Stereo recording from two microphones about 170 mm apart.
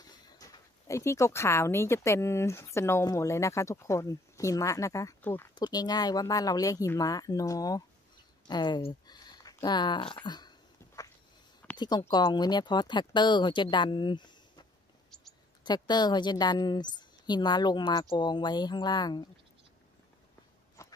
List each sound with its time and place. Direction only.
0.4 s speech: 20° left (ahead or behind)
5.5 s a woman's voice: 25° left (ahead or behind)
11.6 s a sound: 10° left (ahead or behind)
12.1 s a woman's voice: 25° left (ahead or behind)
15.6 s a woman's voice: 25° left (ahead or behind)
20.8 s a sound: 15° left (ahead or behind)